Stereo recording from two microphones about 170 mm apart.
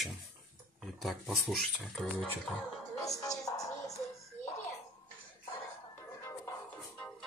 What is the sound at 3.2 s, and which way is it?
Music, 20° left (ahead or behind).